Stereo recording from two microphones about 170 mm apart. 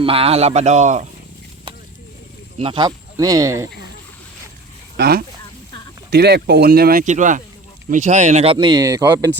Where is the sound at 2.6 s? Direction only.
30° right (ahead or behind).